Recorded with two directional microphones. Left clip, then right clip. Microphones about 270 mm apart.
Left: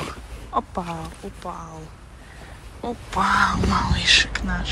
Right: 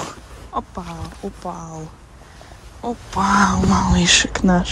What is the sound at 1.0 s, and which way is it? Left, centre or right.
Speech, right.